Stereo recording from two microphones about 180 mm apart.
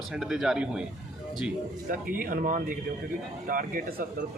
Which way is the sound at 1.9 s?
50° right (ahead or behind).